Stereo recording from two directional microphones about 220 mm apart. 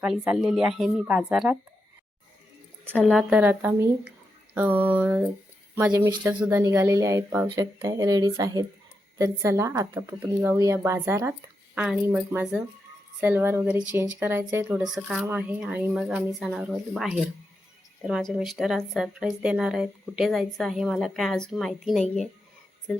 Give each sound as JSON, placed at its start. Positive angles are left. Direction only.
{"t": 0.0, "sound": "a woman's voice", "side_deg": -5}
{"t": 2.9, "sound": "a woman's voice", "side_deg": 5}